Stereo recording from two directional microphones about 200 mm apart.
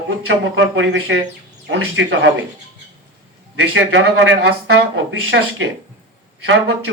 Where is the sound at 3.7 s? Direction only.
75° right (ahead or behind).